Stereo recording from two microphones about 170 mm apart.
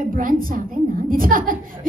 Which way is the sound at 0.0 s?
55° right (ahead or behind).